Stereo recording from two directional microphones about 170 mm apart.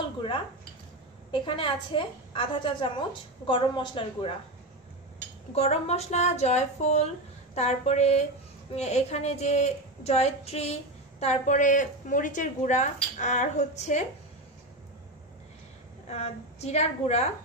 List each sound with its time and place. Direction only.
1.3 s a woman's voice: 30° left (ahead or behind)
5.5 s a woman's voice: 40° left (ahead or behind)
16.1 s speech: 40° left (ahead or behind)